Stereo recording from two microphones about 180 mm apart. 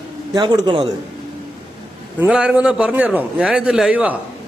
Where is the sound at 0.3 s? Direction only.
25° right (ahead or behind).